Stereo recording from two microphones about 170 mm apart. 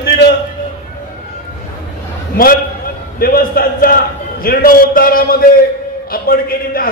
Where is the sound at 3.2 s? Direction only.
60° left (ahead or behind).